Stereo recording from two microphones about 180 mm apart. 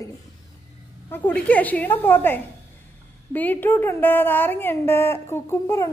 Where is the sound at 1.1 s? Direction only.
10° left (ahead or behind).